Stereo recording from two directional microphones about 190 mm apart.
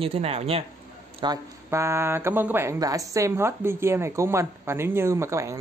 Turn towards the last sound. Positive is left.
turn(degrees=-15)  # may be behind; listen again after turning